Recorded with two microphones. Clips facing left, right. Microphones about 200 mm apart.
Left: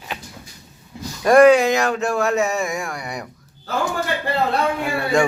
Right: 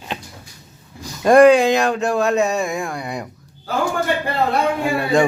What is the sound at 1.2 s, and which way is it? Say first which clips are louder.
Speech: right 1 dB; 15° right (ahead or behind).